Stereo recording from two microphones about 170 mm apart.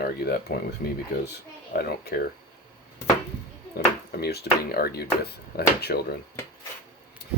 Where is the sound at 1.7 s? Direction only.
65° left (ahead or behind).